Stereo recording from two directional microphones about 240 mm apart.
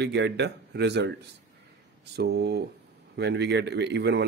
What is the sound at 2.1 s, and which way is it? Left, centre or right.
Speech, right.